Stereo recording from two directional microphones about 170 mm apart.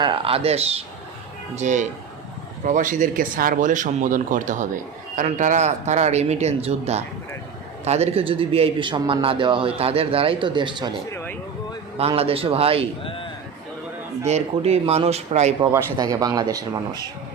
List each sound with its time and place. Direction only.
0.0 s a man's voice: 30° right (ahead or behind)
11.1 s a sound: 15° left (ahead or behind)
11.9 s a man's voice: 35° right (ahead or behind)
13.0 s a sound: 30° left (ahead or behind)
14.3 s a man's voice: 40° right (ahead or behind)
15.6 s speech: 20° right (ahead or behind)